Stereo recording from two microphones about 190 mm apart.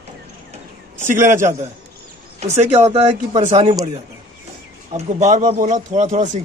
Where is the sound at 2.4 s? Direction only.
35° right (ahead or behind).